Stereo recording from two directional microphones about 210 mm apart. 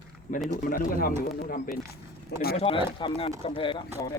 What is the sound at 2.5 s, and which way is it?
Speech, 25° left (ahead or behind).